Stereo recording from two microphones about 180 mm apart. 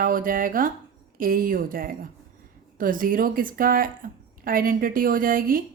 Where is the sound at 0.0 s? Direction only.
50° right (ahead or behind).